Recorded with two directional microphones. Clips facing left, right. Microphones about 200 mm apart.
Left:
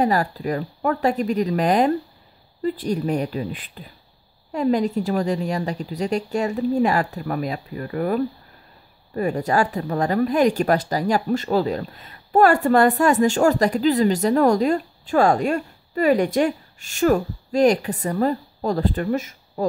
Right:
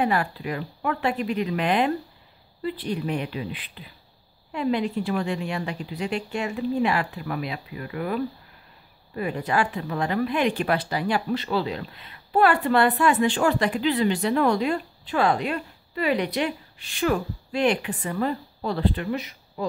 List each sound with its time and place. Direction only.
0.0 s a woman's voice: 40° left (ahead or behind)